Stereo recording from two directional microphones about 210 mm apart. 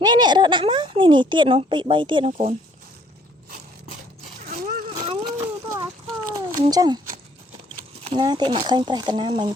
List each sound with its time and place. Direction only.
0.0 s a woman's voice: 20° right (ahead or behind)
5.0 s a sound: 20° right (ahead or behind)
8.0 s speech: 20° right (ahead or behind)